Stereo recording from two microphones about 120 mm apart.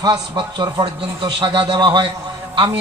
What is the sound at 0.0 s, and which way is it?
A man's voice, 35° right (ahead or behind).